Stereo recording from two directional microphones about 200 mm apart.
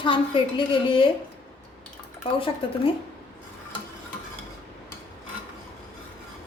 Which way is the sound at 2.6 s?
25° left (ahead or behind).